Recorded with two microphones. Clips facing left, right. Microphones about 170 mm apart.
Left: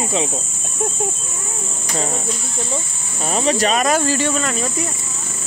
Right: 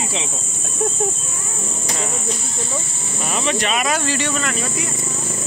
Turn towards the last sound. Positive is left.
turn(degrees=45)  # may be behind; listen again after turning